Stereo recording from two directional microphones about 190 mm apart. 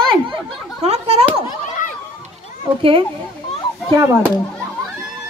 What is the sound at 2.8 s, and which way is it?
Speech, 25° right (ahead or behind).